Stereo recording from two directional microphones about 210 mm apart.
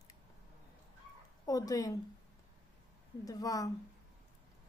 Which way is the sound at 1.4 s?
15° left (ahead or behind).